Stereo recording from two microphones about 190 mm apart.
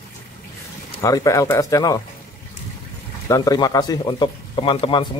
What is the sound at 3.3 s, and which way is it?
A man's voice, 20° left (ahead or behind).